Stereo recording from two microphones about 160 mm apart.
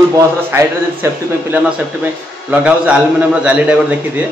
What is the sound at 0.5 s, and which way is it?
Speech, 15° right (ahead or behind).